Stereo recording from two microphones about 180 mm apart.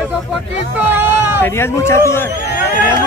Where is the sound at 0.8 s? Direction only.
10° right (ahead or behind).